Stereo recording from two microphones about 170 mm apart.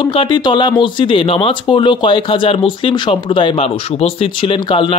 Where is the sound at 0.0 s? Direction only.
30° left (ahead or behind).